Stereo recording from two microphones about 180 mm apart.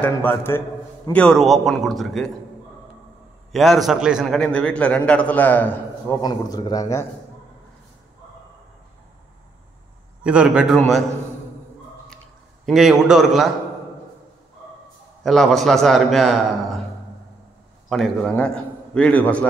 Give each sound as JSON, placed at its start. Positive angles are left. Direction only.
{"t": 0.0, "sound": "a man's voice", "side_deg": 10}
{"t": 3.5, "sound": "a man's voice", "side_deg": 0}
{"t": 6.2, "sound": "a man's voice", "side_deg": 20}
{"t": 10.2, "sound": "a man's voice", "side_deg": -5}
{"t": 12.6, "sound": "a man's voice", "side_deg": 0}
{"t": 15.2, "sound": "a man's voice", "side_deg": 0}
{"t": 17.8, "sound": "a man's voice", "side_deg": 0}